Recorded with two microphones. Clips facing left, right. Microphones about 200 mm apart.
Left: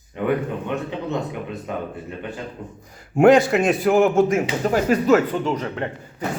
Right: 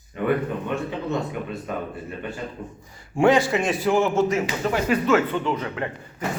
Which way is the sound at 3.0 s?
45° left (ahead or behind).